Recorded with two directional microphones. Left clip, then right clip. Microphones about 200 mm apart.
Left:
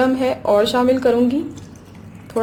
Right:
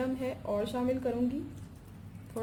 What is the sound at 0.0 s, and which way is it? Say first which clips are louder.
A woman's voice: left 17 dB; 20° left (ahead or behind).